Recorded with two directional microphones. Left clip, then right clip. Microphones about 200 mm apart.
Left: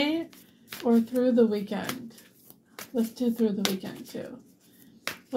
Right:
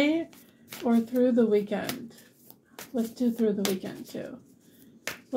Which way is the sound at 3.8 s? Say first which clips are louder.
Right 1 dB; 25° left (ahead or behind).